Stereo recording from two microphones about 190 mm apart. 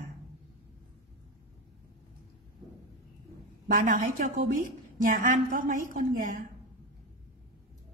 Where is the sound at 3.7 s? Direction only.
50° right (ahead or behind).